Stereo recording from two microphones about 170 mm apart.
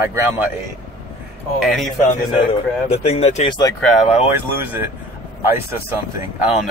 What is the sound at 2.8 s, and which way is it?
Speech, 35° left (ahead or behind).